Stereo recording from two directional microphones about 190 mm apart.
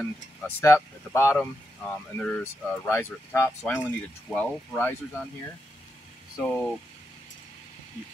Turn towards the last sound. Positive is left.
turn(degrees=5)  # may be behind; listen again after turning